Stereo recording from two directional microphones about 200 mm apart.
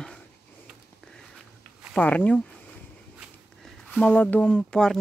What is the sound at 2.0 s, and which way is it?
Speech, 5° left (ahead or behind).